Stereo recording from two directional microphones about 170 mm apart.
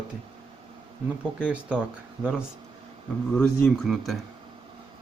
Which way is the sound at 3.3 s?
Centre (ahead or behind).